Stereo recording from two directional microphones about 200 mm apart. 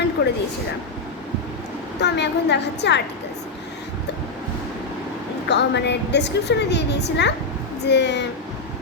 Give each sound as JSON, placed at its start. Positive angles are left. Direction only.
{"t": 0.2, "sound": "a sound", "side_deg": 55}
{"t": 2.0, "sound": "a woman's voice", "side_deg": 60}
{"t": 5.5, "sound": "a woman's voice", "side_deg": 60}